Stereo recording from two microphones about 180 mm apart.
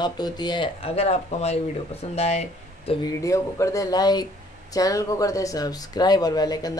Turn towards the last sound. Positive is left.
turn(degrees=20)  # may be behind; listen again after turning